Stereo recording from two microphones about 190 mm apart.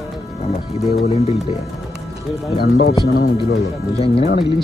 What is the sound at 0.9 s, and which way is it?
Speech, 35° left (ahead or behind).